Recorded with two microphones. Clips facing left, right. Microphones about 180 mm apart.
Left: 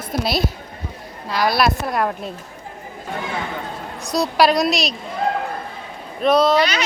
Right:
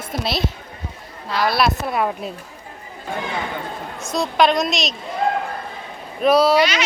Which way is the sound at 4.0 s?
35° left (ahead or behind).